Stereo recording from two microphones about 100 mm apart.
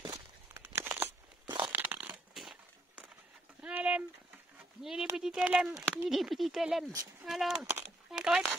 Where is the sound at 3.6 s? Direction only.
10° right (ahead or behind).